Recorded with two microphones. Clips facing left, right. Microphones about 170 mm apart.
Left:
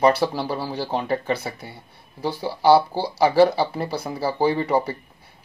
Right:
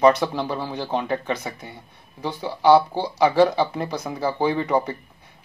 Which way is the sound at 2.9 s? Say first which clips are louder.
Left 1 dB; 10° left (ahead or behind).